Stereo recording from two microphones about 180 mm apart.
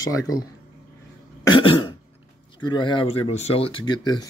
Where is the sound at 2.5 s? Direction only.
25° left (ahead or behind).